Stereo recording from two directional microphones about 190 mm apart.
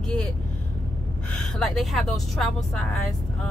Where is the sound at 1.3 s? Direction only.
Centre (ahead or behind).